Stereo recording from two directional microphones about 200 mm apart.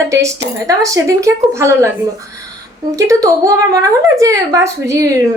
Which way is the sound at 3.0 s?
15° right (ahead or behind).